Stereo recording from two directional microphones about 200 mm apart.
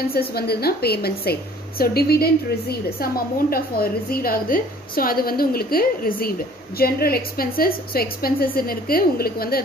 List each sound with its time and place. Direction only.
0.0 s a woman's voice: 50° left (ahead or behind)